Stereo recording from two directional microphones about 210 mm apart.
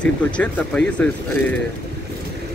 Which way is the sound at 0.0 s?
5° left (ahead or behind).